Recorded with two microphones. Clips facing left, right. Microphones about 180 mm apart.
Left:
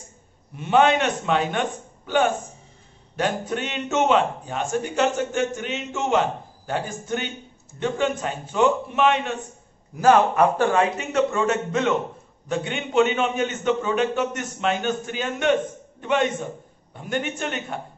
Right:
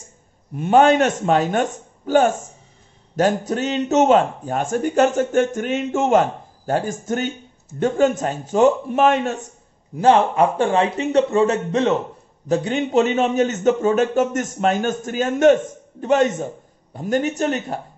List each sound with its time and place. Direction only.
0.6 s speech: 45° right (ahead or behind)
9.9 s a man's voice: 25° right (ahead or behind)